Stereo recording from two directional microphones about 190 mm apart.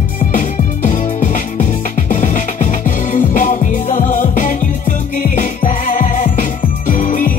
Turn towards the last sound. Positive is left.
turn(degrees=45)  # may be behind; listen again after turning